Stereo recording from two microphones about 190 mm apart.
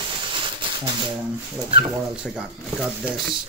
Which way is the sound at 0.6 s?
25° right (ahead or behind).